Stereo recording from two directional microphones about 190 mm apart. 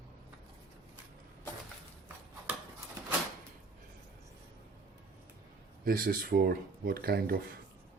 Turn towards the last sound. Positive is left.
turn(degrees=-55)  # may be behind; listen again after turning